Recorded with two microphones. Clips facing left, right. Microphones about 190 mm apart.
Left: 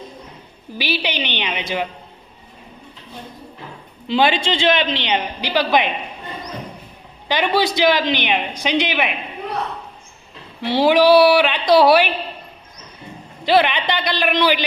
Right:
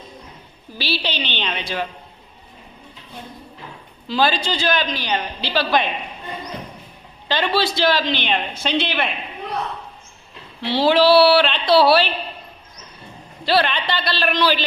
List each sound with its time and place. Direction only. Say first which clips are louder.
0.8 s a woman's voice: left 2 dB; 15° left (ahead or behind)
4.0 s a woman's voice: left 3 dB; 20° left (ahead or behind)
7.3 s a woman's voice: left 2 dB; 15° left (ahead or behind)
10.6 s a woman's voice: left 2 dB; 15° left (ahead or behind)
13.4 s a woman's voice: left 3 dB; 20° left (ahead or behind)